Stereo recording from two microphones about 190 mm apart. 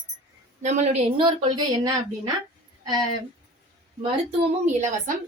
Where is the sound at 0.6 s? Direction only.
35° right (ahead or behind).